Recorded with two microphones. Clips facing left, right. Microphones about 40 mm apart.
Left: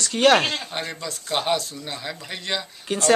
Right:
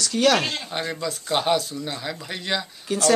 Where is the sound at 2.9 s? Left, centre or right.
Left.